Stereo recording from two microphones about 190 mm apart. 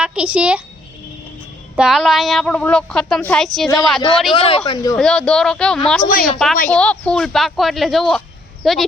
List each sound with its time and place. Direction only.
0.0 s a child's voice: 5° right (ahead or behind)
1.7 s a woman's voice: centre (ahead or behind)
4.3 s speech: 30° left (ahead or behind)
4.9 s a woman's voice: 5° left (ahead or behind)
6.1 s a woman's voice: 50° left (ahead or behind)
6.7 s a woman's voice: 5° left (ahead or behind)